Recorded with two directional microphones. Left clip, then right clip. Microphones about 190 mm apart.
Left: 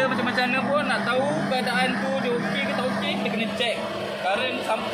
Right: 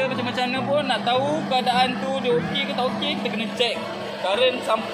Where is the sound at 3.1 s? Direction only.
40° right (ahead or behind).